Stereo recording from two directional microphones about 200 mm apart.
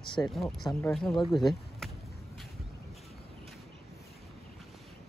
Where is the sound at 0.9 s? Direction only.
Centre (ahead or behind).